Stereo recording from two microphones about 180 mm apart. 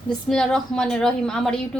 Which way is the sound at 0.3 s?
5° left (ahead or behind).